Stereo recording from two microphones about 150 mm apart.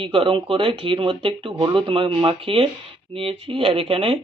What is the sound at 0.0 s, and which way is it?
Speech, 35° right (ahead or behind).